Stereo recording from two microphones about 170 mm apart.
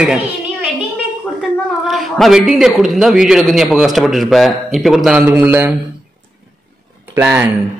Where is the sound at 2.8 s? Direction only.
Centre (ahead or behind).